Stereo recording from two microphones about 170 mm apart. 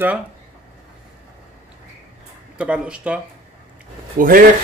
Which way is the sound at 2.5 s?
5° right (ahead or behind).